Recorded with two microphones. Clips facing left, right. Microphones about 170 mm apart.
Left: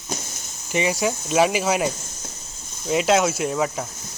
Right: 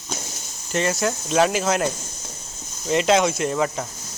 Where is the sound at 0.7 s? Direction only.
10° left (ahead or behind).